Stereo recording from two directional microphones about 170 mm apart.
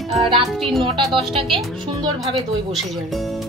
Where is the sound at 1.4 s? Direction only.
30° right (ahead or behind).